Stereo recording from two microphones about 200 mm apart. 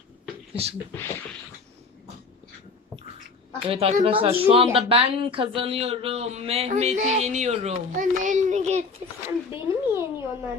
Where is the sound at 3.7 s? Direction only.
30° right (ahead or behind).